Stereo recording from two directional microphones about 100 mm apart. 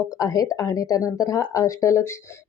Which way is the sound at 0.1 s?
35° left (ahead or behind).